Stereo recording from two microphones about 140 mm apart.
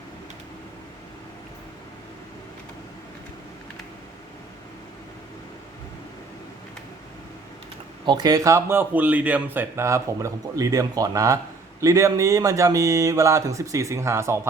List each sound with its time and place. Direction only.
8.0 s speech: 30° right (ahead or behind)